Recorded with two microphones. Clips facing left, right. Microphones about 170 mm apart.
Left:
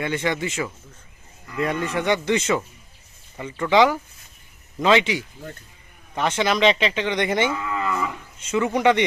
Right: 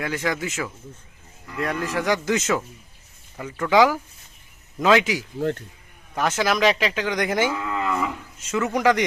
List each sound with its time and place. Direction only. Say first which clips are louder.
0.0 s speech: left 2 dB; centre (ahead or behind)
5.4 s speech: right 13 dB; 75° right (ahead or behind)
6.1 s speech: even; 5° right (ahead or behind)